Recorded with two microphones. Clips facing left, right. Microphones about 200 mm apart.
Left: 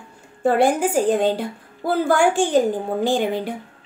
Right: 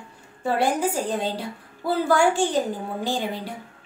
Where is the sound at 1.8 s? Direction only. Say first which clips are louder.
Left 2 dB; 50° left (ahead or behind).